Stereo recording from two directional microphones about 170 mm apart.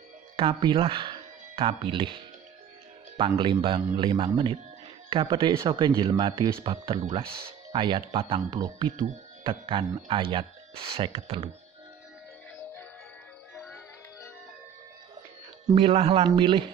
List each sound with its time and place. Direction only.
0.4 s speech: 30° right (ahead or behind)
15.7 s speech: 35° right (ahead or behind)